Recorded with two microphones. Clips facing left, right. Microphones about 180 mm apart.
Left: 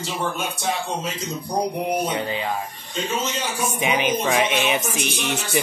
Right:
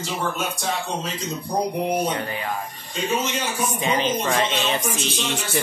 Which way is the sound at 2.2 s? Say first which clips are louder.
Left 2 dB; 20° left (ahead or behind).